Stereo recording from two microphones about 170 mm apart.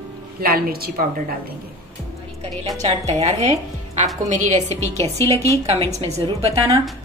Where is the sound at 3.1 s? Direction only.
35° right (ahead or behind).